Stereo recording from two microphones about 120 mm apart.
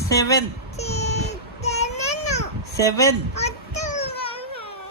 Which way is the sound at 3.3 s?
70° left (ahead or behind).